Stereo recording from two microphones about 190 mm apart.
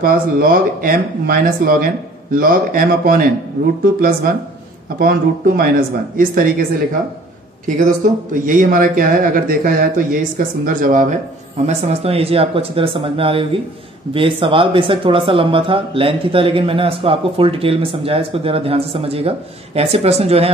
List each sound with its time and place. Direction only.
0.0 s speech: 50° right (ahead or behind)
5.6 s speech: 45° right (ahead or behind)